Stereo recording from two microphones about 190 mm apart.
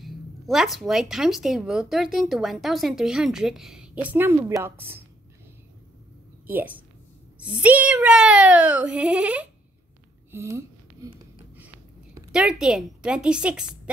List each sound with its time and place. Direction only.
0.0 s speech: centre (ahead or behind)
6.4 s speech: 10° right (ahead or behind)
10.3 s a sound: 15° right (ahead or behind)